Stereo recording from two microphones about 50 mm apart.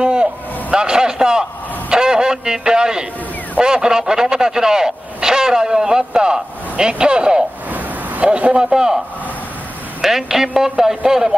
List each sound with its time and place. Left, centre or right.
0.0 s a sound: right
3.6 s speech: centre
7.7 s a sound: right
8.3 s a man's voice: right
8.7 s speech: centre
10.0 s speech: centre